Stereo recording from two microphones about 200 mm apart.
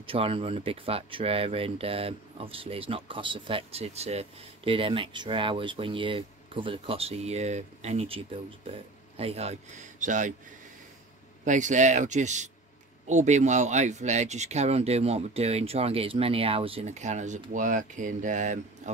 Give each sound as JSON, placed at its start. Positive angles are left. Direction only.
{"t": 0.0, "sound": "speech", "side_deg": -25}
{"t": 11.4, "sound": "speech", "side_deg": -40}